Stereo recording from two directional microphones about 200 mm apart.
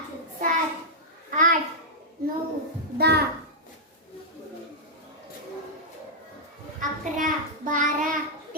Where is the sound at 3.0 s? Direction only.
55° right (ahead or behind).